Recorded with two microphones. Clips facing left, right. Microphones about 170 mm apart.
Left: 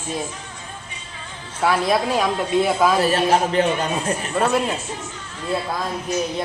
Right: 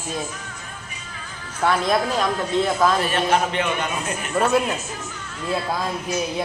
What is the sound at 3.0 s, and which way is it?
A man's voice, 35° left (ahead or behind).